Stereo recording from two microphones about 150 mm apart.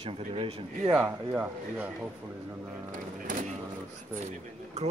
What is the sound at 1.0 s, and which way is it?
Speech, 15° right (ahead or behind).